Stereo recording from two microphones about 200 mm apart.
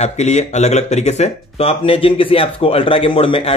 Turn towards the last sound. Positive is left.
turn(degrees=30)  # may be behind; listen again after turning